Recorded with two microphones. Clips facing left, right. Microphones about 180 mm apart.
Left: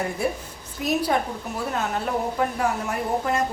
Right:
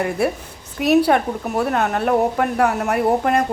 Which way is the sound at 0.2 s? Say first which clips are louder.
Right 5 dB; 70° right (ahead or behind).